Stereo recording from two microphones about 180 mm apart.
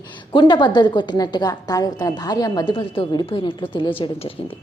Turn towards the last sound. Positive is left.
turn(degrees=30)  # may be behind; listen again after turning